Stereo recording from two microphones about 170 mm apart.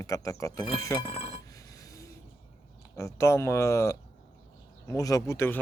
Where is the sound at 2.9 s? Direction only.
15° left (ahead or behind).